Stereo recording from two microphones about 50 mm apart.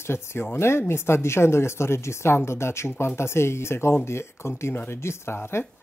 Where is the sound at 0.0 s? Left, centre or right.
Left.